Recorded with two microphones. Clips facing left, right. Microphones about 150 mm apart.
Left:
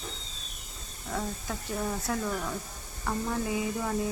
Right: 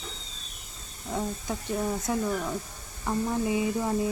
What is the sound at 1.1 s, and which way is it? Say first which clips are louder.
Speech: right 3 dB; 20° right (ahead or behind).